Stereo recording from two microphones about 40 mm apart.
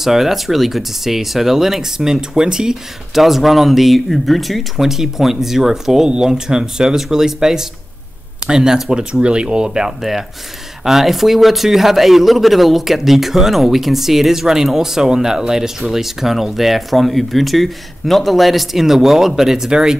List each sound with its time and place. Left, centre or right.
0.0 s speech: centre
3.2 s speech: centre
10.8 s speech: centre